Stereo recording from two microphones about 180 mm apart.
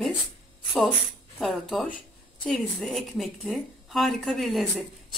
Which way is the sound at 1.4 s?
Centre (ahead or behind).